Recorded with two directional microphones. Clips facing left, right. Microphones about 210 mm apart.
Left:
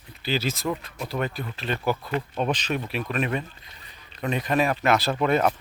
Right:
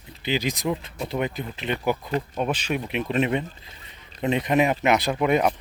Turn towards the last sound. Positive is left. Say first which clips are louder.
# right 1 dB
turn(degrees=-10)  # may be behind; listen again after turning